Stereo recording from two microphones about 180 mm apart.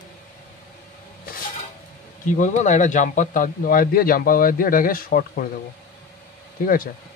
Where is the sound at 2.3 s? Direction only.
45° left (ahead or behind).